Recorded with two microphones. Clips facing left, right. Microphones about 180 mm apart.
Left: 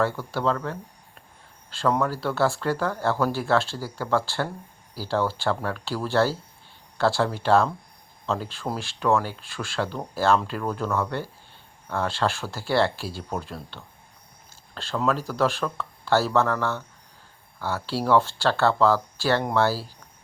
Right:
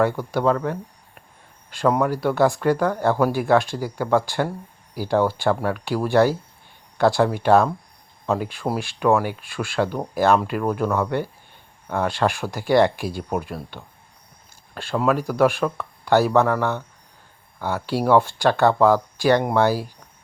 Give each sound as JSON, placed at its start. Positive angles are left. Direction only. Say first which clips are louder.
{"t": 0.0, "sound": "speech", "louder": "right 5 dB", "side_deg": -15}